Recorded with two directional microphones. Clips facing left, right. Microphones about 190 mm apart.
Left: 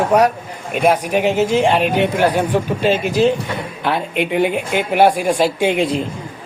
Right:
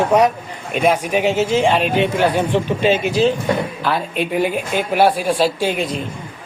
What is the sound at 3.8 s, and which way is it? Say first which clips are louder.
A man's voice: left 1 dB; 20° left (ahead or behind).